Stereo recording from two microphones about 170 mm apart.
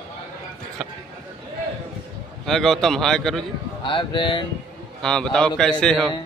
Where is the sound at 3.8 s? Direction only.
30° left (ahead or behind).